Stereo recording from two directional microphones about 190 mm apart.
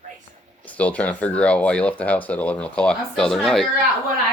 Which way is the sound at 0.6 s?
10° left (ahead or behind).